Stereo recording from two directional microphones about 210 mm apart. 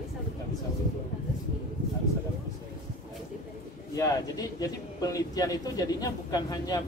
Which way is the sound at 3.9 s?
15° left (ahead or behind).